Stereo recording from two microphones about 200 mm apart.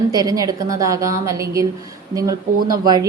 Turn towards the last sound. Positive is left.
turn(degrees=-20)  # may be behind; listen again after turning